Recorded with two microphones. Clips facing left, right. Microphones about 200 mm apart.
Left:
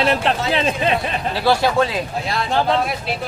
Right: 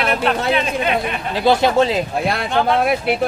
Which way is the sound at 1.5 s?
25° right (ahead or behind).